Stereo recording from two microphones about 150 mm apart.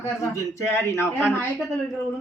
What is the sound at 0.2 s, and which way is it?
Speech, 20° left (ahead or behind).